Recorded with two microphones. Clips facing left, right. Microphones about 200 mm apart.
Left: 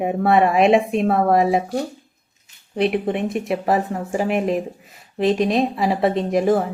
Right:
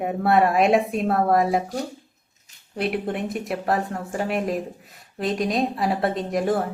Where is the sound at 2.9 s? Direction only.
65° left (ahead or behind).